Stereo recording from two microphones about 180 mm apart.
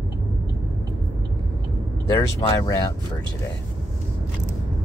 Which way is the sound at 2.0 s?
25° left (ahead or behind).